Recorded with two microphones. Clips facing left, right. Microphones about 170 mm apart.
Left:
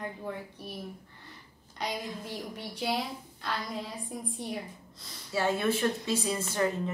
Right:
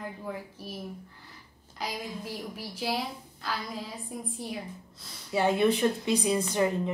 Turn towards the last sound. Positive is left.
turn(degrees=-15)  # may be behind; listen again after turning